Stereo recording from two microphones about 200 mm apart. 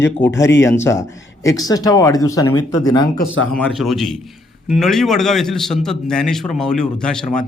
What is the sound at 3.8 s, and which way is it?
A man's voice, centre (ahead or behind).